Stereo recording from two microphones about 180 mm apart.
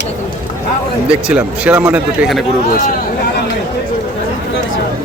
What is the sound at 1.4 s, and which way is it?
Speech, 10° right (ahead or behind).